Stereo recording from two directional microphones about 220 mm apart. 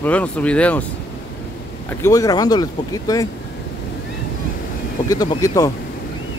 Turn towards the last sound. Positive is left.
turn(degrees=15)  # may be behind; listen again after turning